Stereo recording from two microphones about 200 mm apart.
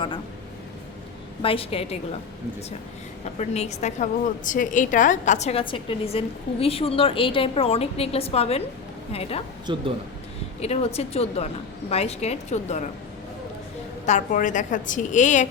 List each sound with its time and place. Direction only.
1.4 s a woman's voice: 30° left (ahead or behind)
3.3 s a woman's voice: 35° left (ahead or behind)
9.7 s speech: 20° right (ahead or behind)
10.6 s a woman's voice: 30° left (ahead or behind)
14.0 s a woman's voice: 35° left (ahead or behind)